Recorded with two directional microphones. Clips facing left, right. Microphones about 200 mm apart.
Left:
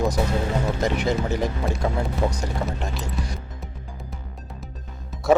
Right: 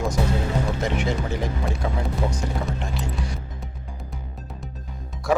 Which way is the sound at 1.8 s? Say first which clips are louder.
Left 3 dB; 45° left (ahead or behind).